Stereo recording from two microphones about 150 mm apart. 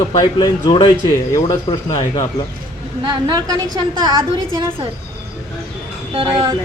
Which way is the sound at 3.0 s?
25° right (ahead or behind).